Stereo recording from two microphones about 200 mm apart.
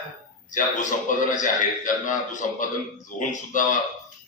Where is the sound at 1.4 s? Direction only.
40° left (ahead or behind).